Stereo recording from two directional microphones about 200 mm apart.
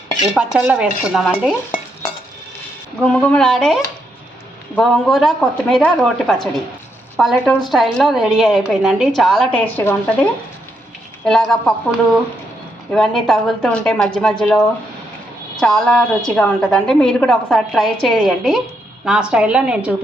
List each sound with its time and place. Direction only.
0.3 s a woman's voice: 5° right (ahead or behind)
3.1 s a woman's voice: 5° left (ahead or behind)
11.3 s a woman's voice: 5° left (ahead or behind)
15.6 s a woman's voice: 5° left (ahead or behind)